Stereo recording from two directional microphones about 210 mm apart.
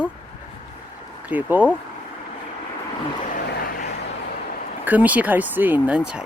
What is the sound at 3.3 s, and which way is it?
Vehicle, 45° left (ahead or behind).